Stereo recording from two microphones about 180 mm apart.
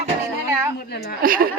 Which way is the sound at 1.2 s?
50° right (ahead or behind).